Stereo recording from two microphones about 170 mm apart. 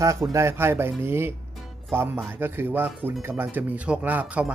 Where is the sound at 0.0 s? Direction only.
15° right (ahead or behind).